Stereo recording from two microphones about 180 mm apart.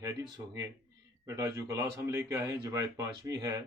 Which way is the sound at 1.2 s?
15° right (ahead or behind).